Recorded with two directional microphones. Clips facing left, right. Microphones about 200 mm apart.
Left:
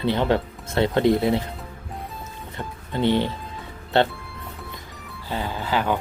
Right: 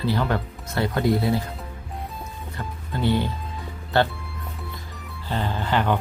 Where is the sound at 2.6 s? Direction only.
20° left (ahead or behind).